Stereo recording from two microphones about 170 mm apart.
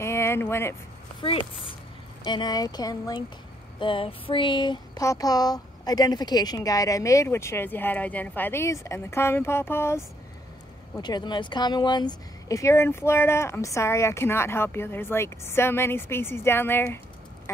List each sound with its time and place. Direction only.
0.0 s vehicle: 15° left (ahead or behind)
2.2 s speech: 25° left (ahead or behind)
11.0 s speech: 25° left (ahead or behind)